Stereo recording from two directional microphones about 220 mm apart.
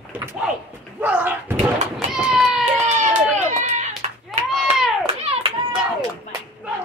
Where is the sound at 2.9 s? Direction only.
30° right (ahead or behind).